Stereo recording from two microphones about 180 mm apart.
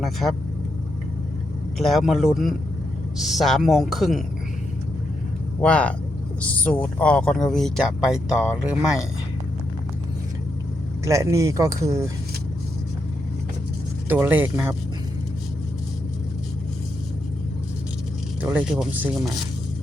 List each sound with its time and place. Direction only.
0.0 s speech: centre (ahead or behind)
1.8 s speech: centre (ahead or behind)
5.6 s speech: 5° left (ahead or behind)
11.0 s speech: 15° right (ahead or behind)
14.1 s speech: 10° right (ahead or behind)
18.4 s speech: 5° right (ahead or behind)